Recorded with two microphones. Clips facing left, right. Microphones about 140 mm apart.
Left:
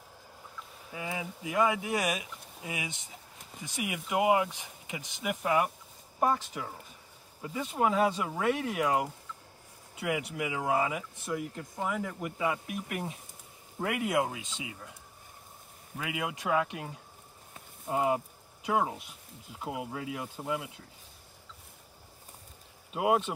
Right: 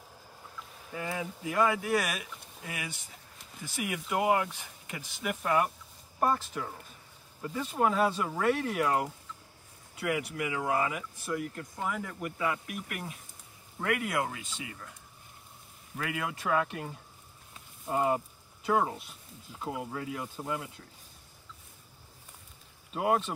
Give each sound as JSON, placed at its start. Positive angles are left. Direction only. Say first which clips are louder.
{"t": 0.9, "sound": "speech", "louder": "right 2 dB", "side_deg": 5}
{"t": 16.0, "sound": "speech", "louder": "even", "side_deg": 10}
{"t": 22.9, "sound": "speech", "louder": "left 1 dB", "side_deg": 10}